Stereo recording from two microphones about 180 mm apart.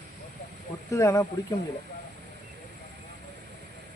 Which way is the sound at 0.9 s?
15° left (ahead or behind).